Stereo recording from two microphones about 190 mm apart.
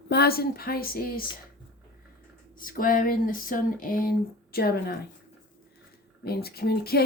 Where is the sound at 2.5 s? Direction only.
45° left (ahead or behind).